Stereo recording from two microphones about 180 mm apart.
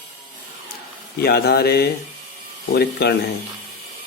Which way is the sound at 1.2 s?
60° left (ahead or behind).